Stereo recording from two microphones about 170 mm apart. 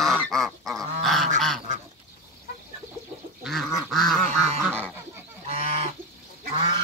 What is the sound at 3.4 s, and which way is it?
Duck, centre (ahead or behind).